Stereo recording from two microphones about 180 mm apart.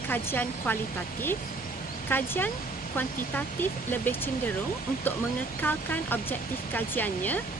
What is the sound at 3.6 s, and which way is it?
Speech, 10° left (ahead or behind).